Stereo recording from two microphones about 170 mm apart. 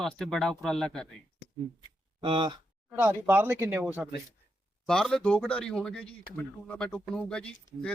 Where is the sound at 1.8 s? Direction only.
30° right (ahead or behind).